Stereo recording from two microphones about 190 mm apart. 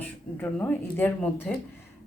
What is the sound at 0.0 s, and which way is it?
Speech, 10° left (ahead or behind).